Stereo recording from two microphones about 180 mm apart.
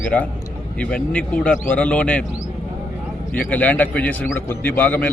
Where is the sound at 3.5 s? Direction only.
10° left (ahead or behind).